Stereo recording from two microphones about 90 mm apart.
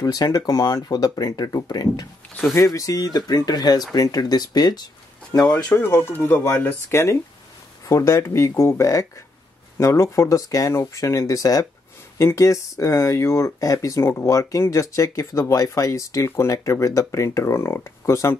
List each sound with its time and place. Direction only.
0.0 s speech: 40° left (ahead or behind)
5.7 s speech: 20° left (ahead or behind)